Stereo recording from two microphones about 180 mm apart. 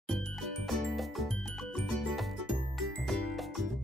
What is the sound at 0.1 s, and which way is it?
Music, centre (ahead or behind).